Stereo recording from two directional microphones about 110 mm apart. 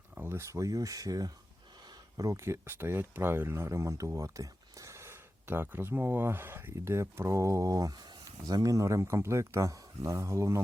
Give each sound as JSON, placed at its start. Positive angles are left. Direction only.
{"t": 0.1, "sound": "speech", "side_deg": -20}